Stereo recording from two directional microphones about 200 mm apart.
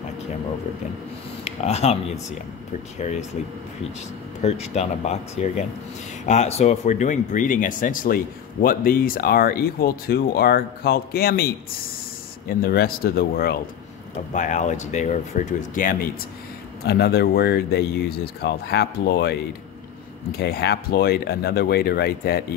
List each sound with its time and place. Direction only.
1.4 s speech: 30° left (ahead or behind)
4.4 s speech: 35° left (ahead or behind); by 13.6 s 50° left (ahead or behind)
14.3 s speech: 35° left (ahead or behind)
16.8 s speech: 55° left (ahead or behind)
20.3 s speech: 50° left (ahead or behind)